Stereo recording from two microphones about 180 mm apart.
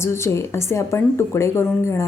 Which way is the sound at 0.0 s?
15° left (ahead or behind).